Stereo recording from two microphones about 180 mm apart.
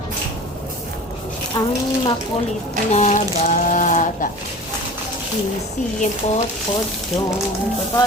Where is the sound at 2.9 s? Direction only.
40° left (ahead or behind).